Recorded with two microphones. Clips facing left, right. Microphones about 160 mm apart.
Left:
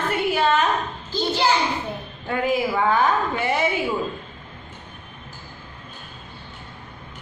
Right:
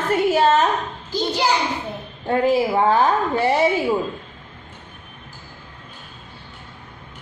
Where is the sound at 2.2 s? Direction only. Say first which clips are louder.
Right 5 dB; 35° right (ahead or behind).